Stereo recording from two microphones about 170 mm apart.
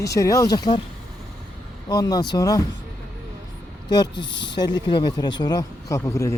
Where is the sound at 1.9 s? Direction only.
20° left (ahead or behind).